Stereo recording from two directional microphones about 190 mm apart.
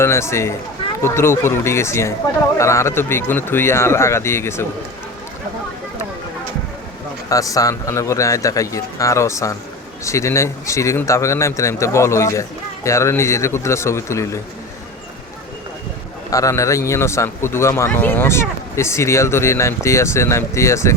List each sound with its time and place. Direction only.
0.0 s speech: 15° left (ahead or behind)
7.3 s speech: 20° left (ahead or behind)
16.3 s speech: 15° left (ahead or behind)